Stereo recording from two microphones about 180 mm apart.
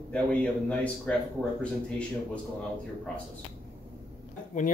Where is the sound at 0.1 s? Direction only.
5° left (ahead or behind).